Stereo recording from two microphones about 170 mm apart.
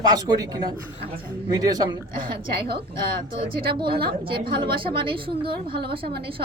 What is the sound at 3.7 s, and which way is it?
A woman's voice, 30° right (ahead or behind).